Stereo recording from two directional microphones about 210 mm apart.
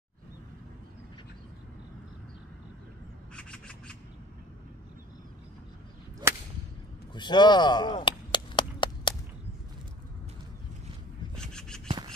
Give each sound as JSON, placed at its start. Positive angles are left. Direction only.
{"t": 3.3, "sound": "rub", "side_deg": 5}
{"t": 7.2, "sound": "speech", "side_deg": 20}
{"t": 8.3, "sound": "chop", "side_deg": 20}
{"t": 11.3, "sound": "a sound", "side_deg": 5}